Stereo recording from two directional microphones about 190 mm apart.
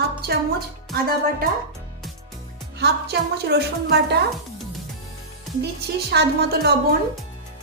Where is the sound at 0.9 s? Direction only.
50° right (ahead or behind).